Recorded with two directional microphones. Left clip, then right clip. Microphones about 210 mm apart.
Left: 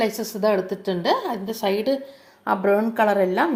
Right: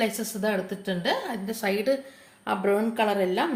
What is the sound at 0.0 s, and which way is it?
A woman's voice, 20° left (ahead or behind).